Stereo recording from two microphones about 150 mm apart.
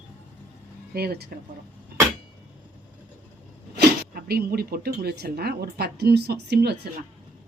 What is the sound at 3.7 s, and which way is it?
Speech, 90° right.